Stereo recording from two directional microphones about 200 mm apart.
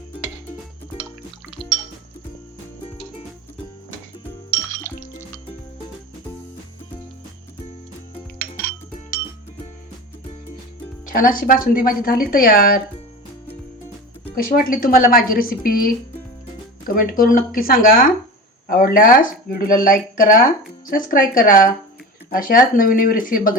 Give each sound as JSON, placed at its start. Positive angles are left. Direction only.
{"t": 4.9, "sound": "music", "side_deg": 15}
{"t": 11.0, "sound": "speech", "side_deg": 45}
{"t": 14.5, "sound": "speech", "side_deg": 45}